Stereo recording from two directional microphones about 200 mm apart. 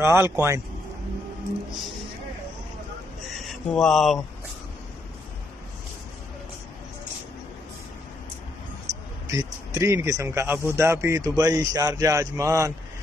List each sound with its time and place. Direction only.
0.0 s speech: 10° right (ahead or behind)
3.4 s speech: centre (ahead or behind)
9.3 s speech: 15° right (ahead or behind)